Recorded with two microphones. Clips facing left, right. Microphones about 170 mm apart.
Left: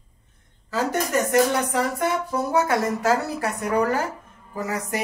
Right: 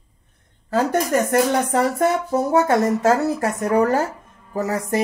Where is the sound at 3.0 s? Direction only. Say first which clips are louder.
Right 5 dB; 45° right (ahead or behind).